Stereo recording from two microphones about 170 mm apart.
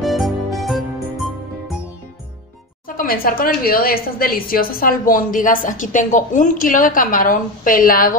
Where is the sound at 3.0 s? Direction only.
60° left (ahead or behind).